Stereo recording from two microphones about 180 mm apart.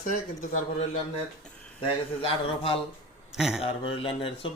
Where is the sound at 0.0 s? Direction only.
45° left (ahead or behind).